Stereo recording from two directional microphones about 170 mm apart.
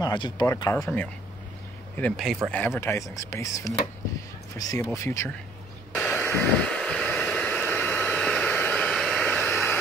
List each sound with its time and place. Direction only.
0.0 s speech: 25° left (ahead or behind)
0.7 s speech: 5° left (ahead or behind)
2.8 s speech: 15° left (ahead or behind)
5.9 s vehicle: 10° left (ahead or behind)